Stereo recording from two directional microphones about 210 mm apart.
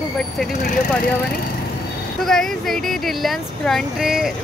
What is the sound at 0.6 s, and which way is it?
Speech, 35° left (ahead or behind).